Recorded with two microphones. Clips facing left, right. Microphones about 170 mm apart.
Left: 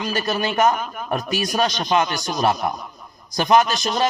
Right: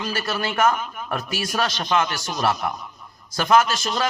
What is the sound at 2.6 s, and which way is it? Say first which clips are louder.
Speech: left 3 dB; 40° left (ahead or behind).